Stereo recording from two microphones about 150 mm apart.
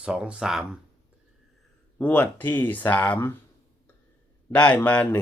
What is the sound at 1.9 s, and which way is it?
A man's voice, 10° left (ahead or behind).